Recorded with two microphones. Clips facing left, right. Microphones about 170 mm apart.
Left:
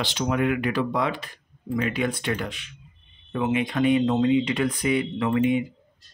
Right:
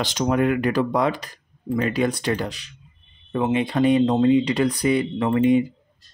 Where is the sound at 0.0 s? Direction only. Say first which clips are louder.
Right 4 dB; 40° right (ahead or behind).